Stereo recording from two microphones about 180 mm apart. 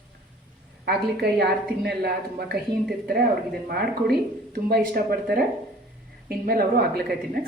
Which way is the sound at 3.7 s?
60° right (ahead or behind).